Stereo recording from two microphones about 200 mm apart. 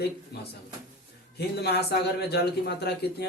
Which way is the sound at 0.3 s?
55° left (ahead or behind).